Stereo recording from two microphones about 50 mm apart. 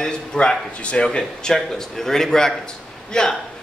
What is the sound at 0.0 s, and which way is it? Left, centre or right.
A man's voice, centre.